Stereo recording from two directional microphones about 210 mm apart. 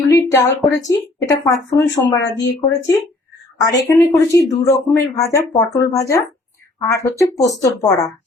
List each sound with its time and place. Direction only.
0.1 s a woman's voice: 15° left (ahead or behind)